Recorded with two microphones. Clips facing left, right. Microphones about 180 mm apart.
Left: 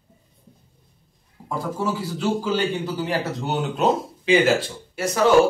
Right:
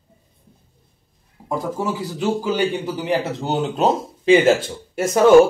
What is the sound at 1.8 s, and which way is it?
A man's voice, 15° right (ahead or behind).